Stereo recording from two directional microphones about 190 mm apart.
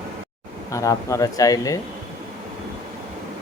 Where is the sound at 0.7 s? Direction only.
15° left (ahead or behind).